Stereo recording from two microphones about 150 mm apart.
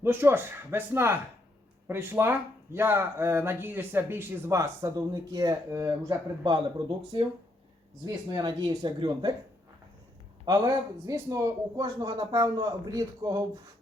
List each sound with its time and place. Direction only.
0.0 s a man's voice: 15° right (ahead or behind)
8.0 s a man's voice: 25° right (ahead or behind)
10.4 s a man's voice: 25° right (ahead or behind)